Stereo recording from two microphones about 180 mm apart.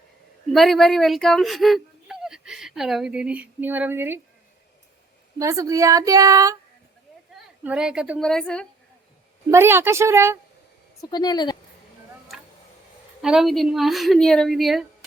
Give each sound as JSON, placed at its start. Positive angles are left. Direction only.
{"t": 0.5, "sound": "speech", "side_deg": 0}
{"t": 5.4, "sound": "speech", "side_deg": -15}
{"t": 7.6, "sound": "a woman's voice", "side_deg": -5}
{"t": 9.5, "sound": "a woman's voice", "side_deg": -15}
{"t": 11.1, "sound": "a woman's voice", "side_deg": 25}
{"t": 13.2, "sound": "a woman's voice", "side_deg": 0}